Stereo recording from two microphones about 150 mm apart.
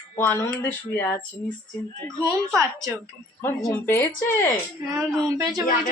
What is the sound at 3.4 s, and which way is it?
Speech, 15° left (ahead or behind).